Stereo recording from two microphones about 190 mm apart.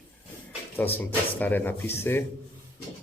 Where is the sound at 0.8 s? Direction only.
10° left (ahead or behind).